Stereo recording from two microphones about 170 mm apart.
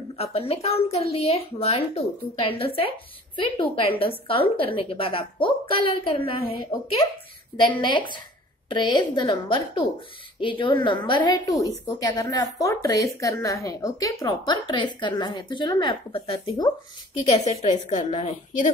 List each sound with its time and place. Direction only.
0.2 s a woman's voice: 35° left (ahead or behind)